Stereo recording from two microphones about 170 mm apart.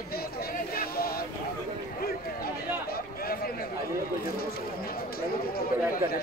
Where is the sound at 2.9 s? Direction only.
60° left (ahead or behind).